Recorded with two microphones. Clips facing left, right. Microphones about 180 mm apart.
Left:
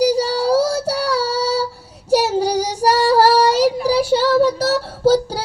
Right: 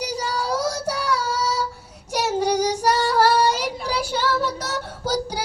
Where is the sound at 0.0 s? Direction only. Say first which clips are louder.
Left 10 dB; 30° left (ahead or behind).